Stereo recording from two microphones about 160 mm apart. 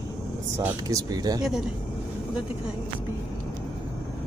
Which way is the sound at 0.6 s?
20° right (ahead or behind).